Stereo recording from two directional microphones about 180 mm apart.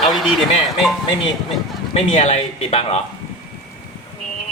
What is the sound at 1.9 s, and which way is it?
Speech, 35° left (ahead or behind).